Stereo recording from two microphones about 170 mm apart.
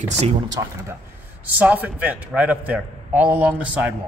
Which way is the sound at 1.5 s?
10° right (ahead or behind).